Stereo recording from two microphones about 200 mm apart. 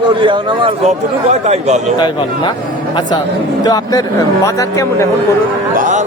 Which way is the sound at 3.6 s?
20° left (ahead or behind).